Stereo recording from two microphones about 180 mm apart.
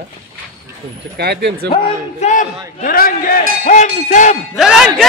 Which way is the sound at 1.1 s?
65° right (ahead or behind).